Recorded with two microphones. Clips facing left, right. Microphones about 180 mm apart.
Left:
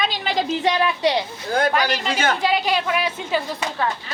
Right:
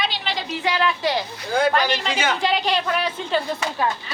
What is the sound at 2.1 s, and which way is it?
Speech, 45° left (ahead or behind).